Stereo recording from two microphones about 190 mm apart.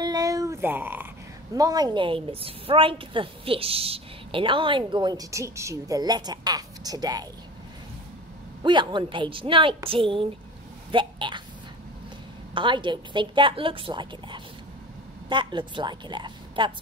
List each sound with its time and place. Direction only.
0.0 s a sound: 20° right (ahead or behind)
1.5 s a woman's voice: 20° right (ahead or behind)
8.6 s a woman's voice: 25° right (ahead or behind)
12.5 s a woman's voice: 25° right (ahead or behind)